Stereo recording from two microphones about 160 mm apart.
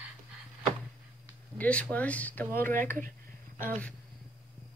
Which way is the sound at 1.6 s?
10° left (ahead or behind).